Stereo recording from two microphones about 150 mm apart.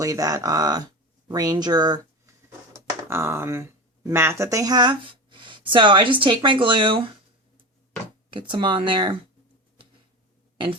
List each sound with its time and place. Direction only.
0.0 s speech: 20° right (ahead or behind)
8.3 s speech: 35° right (ahead or behind)